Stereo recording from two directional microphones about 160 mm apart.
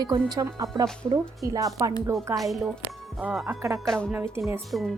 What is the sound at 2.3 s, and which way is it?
Speech, centre (ahead or behind).